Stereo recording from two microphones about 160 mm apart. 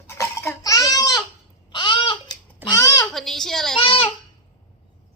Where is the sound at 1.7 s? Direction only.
30° left (ahead or behind).